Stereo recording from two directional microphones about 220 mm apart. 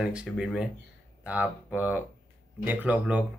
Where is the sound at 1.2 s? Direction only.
5° right (ahead or behind).